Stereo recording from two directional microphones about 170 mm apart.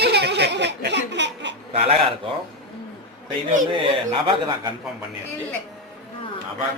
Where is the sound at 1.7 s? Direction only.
35° right (ahead or behind).